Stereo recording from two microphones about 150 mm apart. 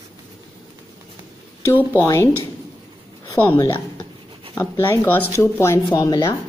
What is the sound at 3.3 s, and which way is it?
Speech, 15° left (ahead or behind).